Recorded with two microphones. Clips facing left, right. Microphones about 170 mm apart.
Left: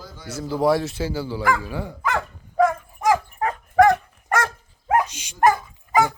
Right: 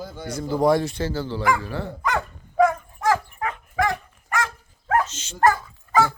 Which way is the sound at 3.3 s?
40° left (ahead or behind).